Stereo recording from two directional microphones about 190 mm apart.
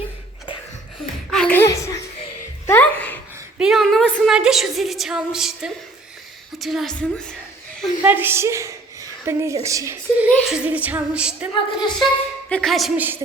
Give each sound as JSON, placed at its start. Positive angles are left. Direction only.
{"t": 1.3, "sound": "a sound", "side_deg": 5}
{"t": 3.6, "sound": "a woman's voice", "side_deg": 0}
{"t": 8.0, "sound": "a woman's voice", "side_deg": -10}
{"t": 9.6, "sound": "music", "side_deg": -15}
{"t": 11.5, "sound": "a woman's voice", "side_deg": 25}
{"t": 12.5, "sound": "a woman's voice", "side_deg": 5}